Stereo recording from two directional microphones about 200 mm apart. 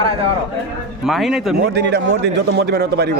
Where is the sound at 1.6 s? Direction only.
55° right (ahead or behind).